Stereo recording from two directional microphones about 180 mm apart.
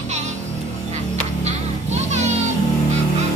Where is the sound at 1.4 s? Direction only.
40° right (ahead or behind).